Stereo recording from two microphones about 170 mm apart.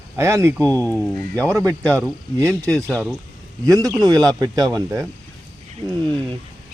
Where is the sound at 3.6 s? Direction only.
20° right (ahead or behind).